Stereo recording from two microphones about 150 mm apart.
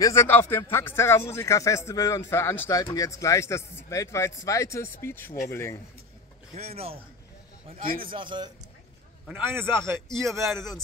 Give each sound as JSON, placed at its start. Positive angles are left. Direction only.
{"t": 0.0, "sound": "a man's voice", "side_deg": 20}
{"t": 6.5, "sound": "speech", "side_deg": -45}
{"t": 8.1, "sound": "a man's voice", "side_deg": -35}
{"t": 9.3, "sound": "a man's voice", "side_deg": -15}